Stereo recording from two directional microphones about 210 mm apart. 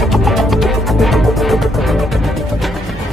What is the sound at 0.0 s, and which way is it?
Music, centre (ahead or behind).